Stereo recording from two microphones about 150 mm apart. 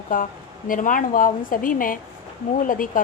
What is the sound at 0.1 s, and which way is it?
A woman's voice, 65° left (ahead or behind).